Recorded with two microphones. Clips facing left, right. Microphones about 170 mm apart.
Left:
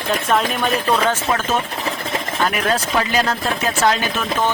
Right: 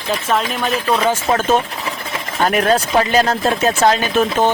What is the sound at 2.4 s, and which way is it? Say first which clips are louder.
Speech: right 6 dB; 45° right (ahead or behind).